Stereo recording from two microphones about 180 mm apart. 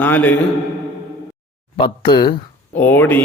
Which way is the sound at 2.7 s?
10° left (ahead or behind).